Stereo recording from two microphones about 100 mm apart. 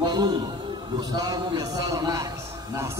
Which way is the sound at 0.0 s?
45° right (ahead or behind).